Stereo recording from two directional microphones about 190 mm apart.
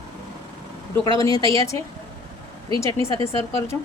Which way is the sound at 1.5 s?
15° left (ahead or behind).